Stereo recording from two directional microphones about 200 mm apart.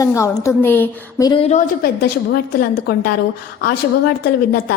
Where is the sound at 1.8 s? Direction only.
50° left (ahead or behind).